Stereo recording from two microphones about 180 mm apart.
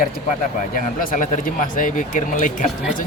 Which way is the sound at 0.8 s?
45° left (ahead or behind).